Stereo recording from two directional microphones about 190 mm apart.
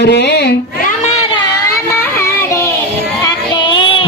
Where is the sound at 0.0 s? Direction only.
60° left (ahead or behind).